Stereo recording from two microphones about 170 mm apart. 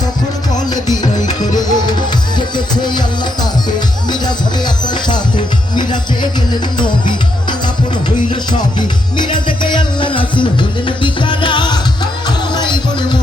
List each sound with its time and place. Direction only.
1.3 s music: 25° left (ahead or behind)
4.1 s music: 25° left (ahead or behind)
9.1 s music: 25° left (ahead or behind)